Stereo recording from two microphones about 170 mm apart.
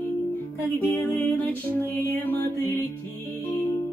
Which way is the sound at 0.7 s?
10° left (ahead or behind).